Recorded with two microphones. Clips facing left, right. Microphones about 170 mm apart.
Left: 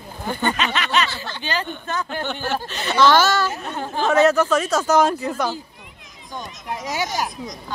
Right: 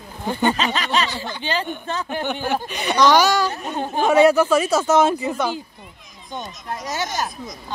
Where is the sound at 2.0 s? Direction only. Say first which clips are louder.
Right 2 dB; 15° right (ahead or behind).